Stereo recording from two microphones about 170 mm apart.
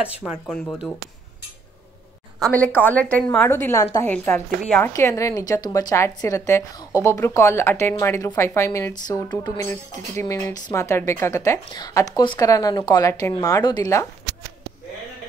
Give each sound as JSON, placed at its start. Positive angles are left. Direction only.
{"t": 0.0, "sound": "speech", "side_deg": -5}
{"t": 0.5, "sound": "speech", "side_deg": 5}
{"t": 2.4, "sound": "a woman's voice", "side_deg": 10}
{"t": 4.9, "sound": "a woman's voice", "side_deg": 20}